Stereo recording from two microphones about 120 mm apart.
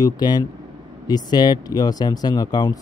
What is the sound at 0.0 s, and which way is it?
Speech, 35° left (ahead or behind).